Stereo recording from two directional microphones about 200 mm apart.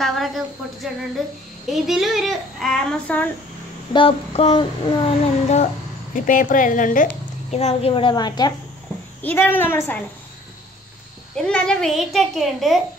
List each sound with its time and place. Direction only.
0.0 s speech: centre (ahead or behind)
3.9 s child singing: 25° left (ahead or behind)
6.1 s speech: 40° left (ahead or behind)
7.5 s child singing: 30° left (ahead or behind)
9.2 s a woman's voice: 10° left (ahead or behind)
11.4 s speech: 5° left (ahead or behind)